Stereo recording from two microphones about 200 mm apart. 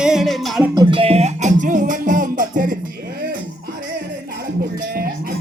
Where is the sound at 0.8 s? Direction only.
25° right (ahead or behind); by 2.7 s 40° right (ahead or behind).